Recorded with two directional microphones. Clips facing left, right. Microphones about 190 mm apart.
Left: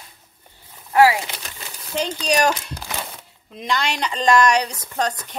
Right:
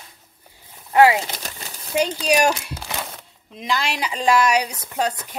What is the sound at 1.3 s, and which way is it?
Speech, 40° right (ahead or behind).